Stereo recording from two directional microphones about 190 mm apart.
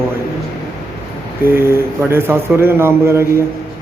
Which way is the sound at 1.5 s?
10° right (ahead or behind).